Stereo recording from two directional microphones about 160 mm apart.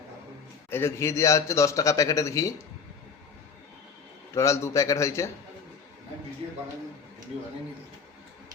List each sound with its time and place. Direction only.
0.7 s a man's voice: 15° left (ahead or behind)
4.4 s a man's voice: 20° left (ahead or behind)